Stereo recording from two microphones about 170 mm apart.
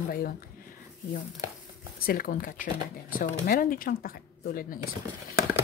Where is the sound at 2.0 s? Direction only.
60° left (ahead or behind).